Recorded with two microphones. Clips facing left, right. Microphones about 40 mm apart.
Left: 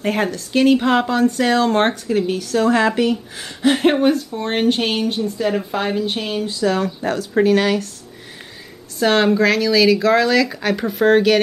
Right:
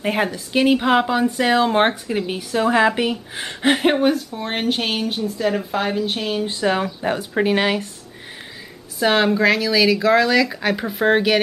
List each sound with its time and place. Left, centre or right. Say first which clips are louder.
0.0 s speech: left 1 dB; centre
3.3 s speech: right 1 dB; right
3.7 s a woman's voice: left 2 dB; centre
6.4 s speech: left 2 dB; right
6.8 s speech: left 1 dB; centre
9.0 s a woman's voice: left 1 dB; centre